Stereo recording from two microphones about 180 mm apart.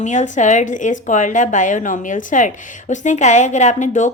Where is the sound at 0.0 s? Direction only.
40° left (ahead or behind).